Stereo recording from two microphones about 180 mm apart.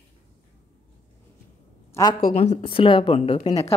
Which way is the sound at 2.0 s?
15° left (ahead or behind).